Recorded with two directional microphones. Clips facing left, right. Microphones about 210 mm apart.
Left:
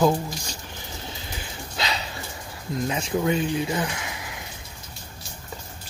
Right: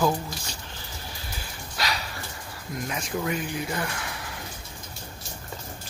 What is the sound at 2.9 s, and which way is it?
Speech, 25° left (ahead or behind).